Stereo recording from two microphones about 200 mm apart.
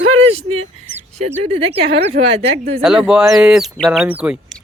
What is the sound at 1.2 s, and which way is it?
Speech, 30° right (ahead or behind).